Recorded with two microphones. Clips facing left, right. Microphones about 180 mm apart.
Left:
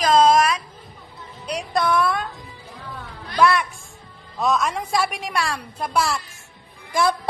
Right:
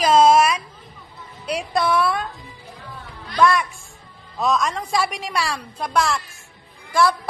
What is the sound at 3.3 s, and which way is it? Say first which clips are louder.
A woman's voice: even; centre (ahead or behind).